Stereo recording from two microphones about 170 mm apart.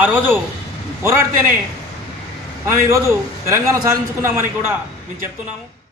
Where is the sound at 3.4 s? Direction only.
20° right (ahead or behind).